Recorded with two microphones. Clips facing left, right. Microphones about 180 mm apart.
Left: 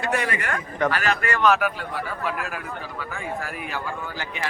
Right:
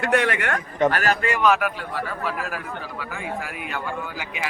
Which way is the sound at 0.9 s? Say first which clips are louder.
Right 2 dB; 40° right (ahead or behind).